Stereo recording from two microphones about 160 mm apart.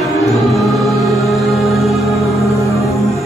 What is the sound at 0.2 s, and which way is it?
Music, centre (ahead or behind).